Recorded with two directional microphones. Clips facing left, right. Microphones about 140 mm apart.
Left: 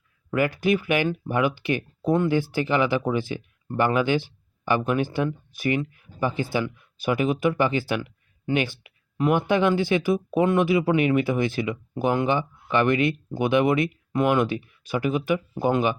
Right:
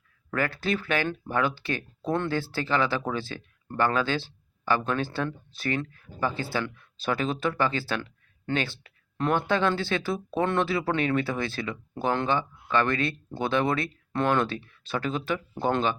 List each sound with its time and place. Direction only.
0.3 s speech: 15° left (ahead or behind)